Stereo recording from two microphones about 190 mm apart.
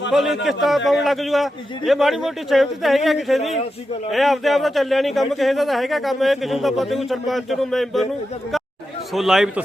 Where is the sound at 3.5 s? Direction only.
30° left (ahead or behind).